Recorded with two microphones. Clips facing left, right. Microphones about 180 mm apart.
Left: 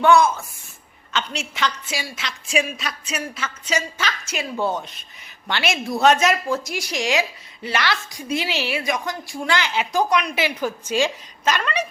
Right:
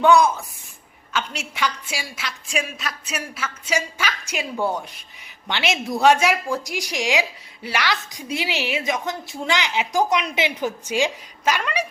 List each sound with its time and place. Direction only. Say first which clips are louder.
0.0 s a woman's voice: even; 15° right (ahead or behind)